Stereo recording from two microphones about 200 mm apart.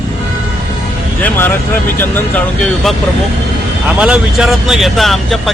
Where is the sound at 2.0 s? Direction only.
10° left (ahead or behind).